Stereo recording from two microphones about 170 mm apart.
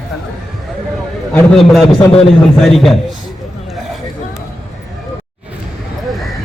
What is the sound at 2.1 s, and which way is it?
Speech, 35° left (ahead or behind).